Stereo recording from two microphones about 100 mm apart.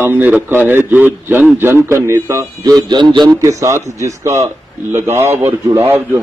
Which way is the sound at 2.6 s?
45° right (ahead or behind).